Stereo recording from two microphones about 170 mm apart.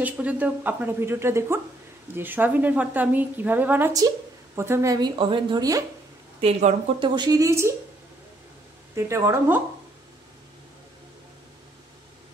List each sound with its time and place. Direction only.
0.0 s a woman's voice: 10° right (ahead or behind)
6.4 s speech: 30° right (ahead or behind); by 7.7 s 15° right (ahead or behind)
8.9 s a woman's voice: 15° right (ahead or behind)